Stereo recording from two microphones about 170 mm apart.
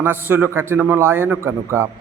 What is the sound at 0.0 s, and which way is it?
A man's voice, 10° right (ahead or behind).